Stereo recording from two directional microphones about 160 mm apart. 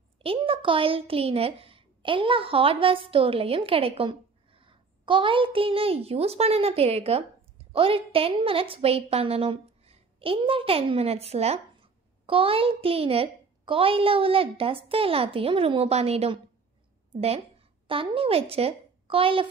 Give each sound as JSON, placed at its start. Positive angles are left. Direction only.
{"t": 0.2, "sound": "a woman's voice", "side_deg": -35}